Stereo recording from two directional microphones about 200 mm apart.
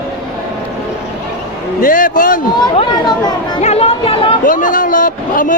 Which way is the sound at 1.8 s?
45° left (ahead or behind).